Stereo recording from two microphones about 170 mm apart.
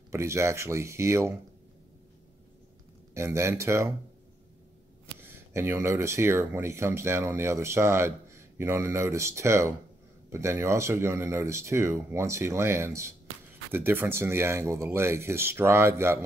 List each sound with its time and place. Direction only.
0.1 s speech: 15° right (ahead or behind)
3.2 s speech: 15° right (ahead or behind)
5.2 s speech: 15° right (ahead or behind)